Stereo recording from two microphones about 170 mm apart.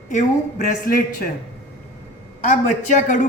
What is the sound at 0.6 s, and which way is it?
Speech, 55° left (ahead or behind).